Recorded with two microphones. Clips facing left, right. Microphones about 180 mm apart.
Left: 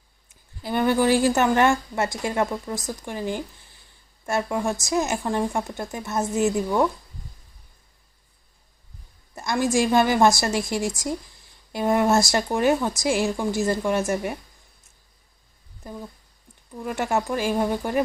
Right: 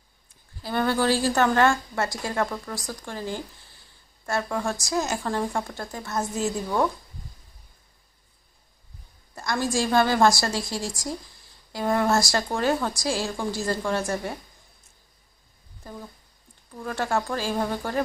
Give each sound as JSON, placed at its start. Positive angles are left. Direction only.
{"t": 0.6, "sound": "speech", "side_deg": 20}
{"t": 9.3, "sound": "speech", "side_deg": 20}
{"t": 16.8, "sound": "speech", "side_deg": 20}